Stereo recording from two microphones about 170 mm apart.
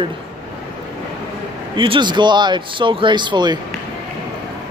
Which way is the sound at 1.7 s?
30° right (ahead or behind).